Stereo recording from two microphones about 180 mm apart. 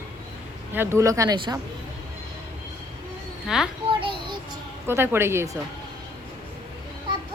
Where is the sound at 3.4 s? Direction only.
5° right (ahead or behind).